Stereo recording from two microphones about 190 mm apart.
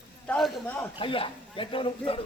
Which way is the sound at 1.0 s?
25° left (ahead or behind).